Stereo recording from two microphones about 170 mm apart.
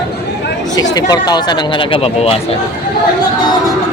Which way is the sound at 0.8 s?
25° left (ahead or behind).